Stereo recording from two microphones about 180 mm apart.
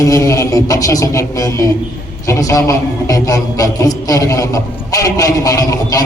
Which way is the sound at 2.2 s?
15° left (ahead or behind).